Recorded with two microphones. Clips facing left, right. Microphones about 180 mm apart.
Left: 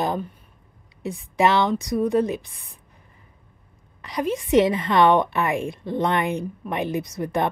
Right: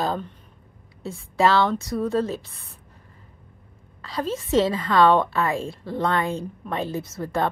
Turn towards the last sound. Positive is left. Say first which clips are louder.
# left 1 dB
turn(degrees=15)  # may be behind; listen again after turning